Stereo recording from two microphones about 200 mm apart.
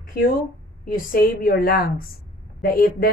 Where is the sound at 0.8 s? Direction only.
45° left (ahead or behind).